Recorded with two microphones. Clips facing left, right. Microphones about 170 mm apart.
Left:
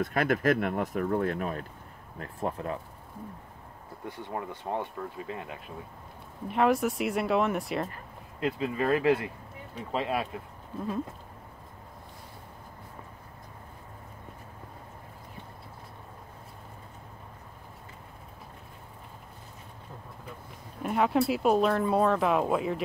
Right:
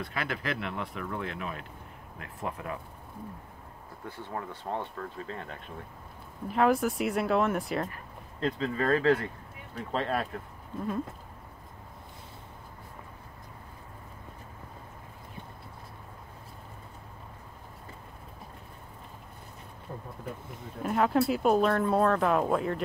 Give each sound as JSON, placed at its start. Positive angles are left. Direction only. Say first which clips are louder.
{"t": 0.0, "sound": "speech", "louder": "left 8 dB", "side_deg": 50}
{"t": 4.0, "sound": "speech", "louder": "left 2 dB", "side_deg": 15}
{"t": 6.4, "sound": "speech", "louder": "even", "side_deg": 0}
{"t": 8.4, "sound": "speech", "louder": "left 1 dB", "side_deg": 10}
{"t": 20.8, "sound": "speech", "louder": "even", "side_deg": 0}